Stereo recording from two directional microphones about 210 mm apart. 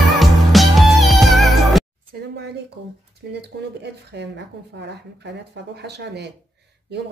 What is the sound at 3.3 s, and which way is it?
Speech, 55° right (ahead or behind).